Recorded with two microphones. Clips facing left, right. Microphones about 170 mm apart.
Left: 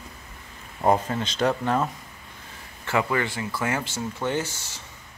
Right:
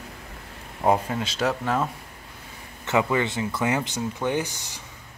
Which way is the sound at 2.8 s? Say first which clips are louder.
Right 2 dB; 20° right (ahead or behind).